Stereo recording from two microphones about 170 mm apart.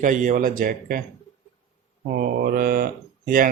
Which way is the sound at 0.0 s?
50° right (ahead or behind).